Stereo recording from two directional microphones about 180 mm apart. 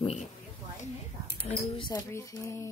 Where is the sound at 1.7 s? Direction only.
30° left (ahead or behind).